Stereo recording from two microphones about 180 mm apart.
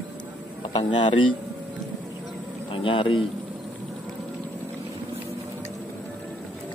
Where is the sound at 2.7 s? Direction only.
30° left (ahead or behind).